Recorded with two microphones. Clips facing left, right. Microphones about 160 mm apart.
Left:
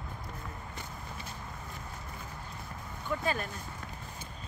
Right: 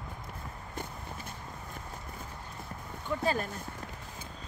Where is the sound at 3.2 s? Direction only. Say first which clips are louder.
Right 4 dB; 35° right (ahead or behind).